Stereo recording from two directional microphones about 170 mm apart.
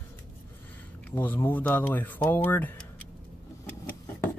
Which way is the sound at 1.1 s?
10° left (ahead or behind).